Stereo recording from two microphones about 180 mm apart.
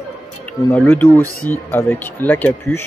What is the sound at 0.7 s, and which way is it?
Speech, 10° left (ahead or behind).